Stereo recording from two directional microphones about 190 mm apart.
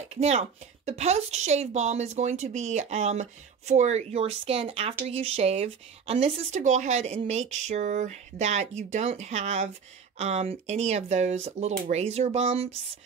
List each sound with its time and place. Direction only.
0.1 s speech: 35° right (ahead or behind)